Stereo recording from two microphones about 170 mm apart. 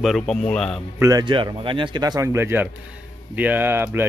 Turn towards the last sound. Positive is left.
turn(degrees=-10)  # may be behind; listen again after turning